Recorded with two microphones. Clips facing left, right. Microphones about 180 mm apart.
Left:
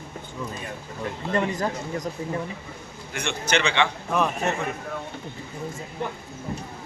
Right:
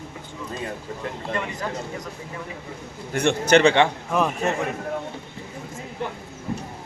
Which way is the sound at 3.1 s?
40° right (ahead or behind).